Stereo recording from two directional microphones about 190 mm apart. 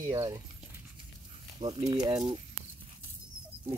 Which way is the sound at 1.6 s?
25° right (ahead or behind).